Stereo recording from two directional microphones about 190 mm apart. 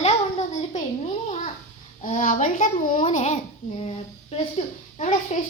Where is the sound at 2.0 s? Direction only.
45° left (ahead or behind).